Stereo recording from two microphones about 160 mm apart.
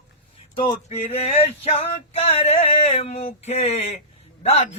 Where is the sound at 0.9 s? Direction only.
40° left (ahead or behind).